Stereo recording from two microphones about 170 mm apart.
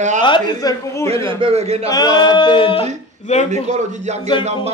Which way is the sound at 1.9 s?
20° left (ahead or behind).